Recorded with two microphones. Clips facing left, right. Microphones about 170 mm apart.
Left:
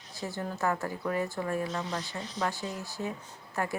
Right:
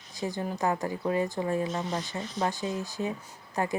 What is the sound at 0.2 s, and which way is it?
A woman's voice, 15° right (ahead or behind).